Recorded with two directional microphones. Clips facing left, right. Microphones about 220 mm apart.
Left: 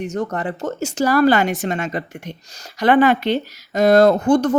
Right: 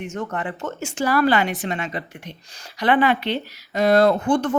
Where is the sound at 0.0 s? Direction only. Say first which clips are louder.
Left 5 dB; 40° left (ahead or behind).